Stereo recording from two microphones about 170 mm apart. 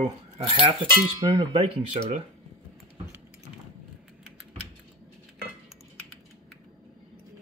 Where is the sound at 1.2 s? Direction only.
25° right (ahead or behind).